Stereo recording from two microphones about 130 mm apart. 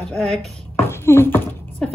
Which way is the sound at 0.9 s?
20° left (ahead or behind).